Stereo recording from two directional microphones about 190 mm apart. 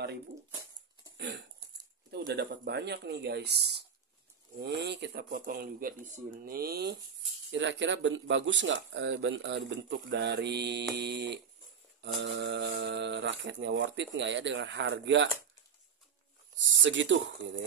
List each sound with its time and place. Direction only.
1.1 s a sound: 65° right (ahead or behind)
2.0 s speech: 60° right (ahead or behind)
7.5 s speech: 75° right (ahead or behind)
16.8 s speech: 75° right (ahead or behind)